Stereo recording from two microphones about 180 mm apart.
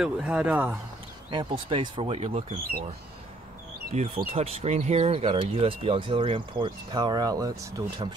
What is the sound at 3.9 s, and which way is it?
Speech, 40° right (ahead or behind).